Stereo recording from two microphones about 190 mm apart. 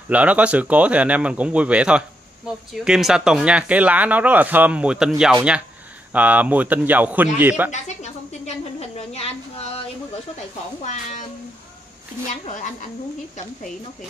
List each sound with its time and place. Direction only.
0.1 s speech: 5° right (ahead or behind)
7.7 s a woman's voice: 35° left (ahead or behind)
10.8 s a woman's voice: 40° left (ahead or behind)
12.3 s a woman's voice: 40° left (ahead or behind)